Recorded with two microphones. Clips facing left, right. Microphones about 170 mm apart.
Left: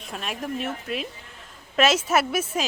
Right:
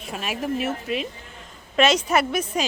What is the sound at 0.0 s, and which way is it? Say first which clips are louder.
Speech: right 3 dB; 5° right (ahead or behind).